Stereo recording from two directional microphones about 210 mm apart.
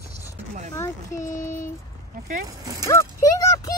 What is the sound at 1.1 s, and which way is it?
Speech, 40° left (ahead or behind).